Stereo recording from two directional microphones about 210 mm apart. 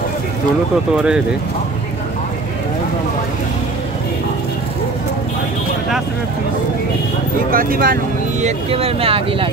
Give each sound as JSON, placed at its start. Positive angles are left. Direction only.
{"t": 0.9, "sound": "speech", "side_deg": -5}
{"t": 7.5, "sound": "speech", "side_deg": -45}